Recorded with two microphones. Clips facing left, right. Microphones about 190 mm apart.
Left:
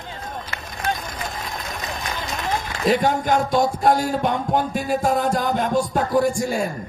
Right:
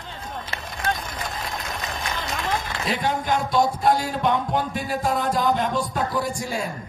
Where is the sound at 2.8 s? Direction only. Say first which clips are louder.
Left 8 dB; 45° left (ahead or behind).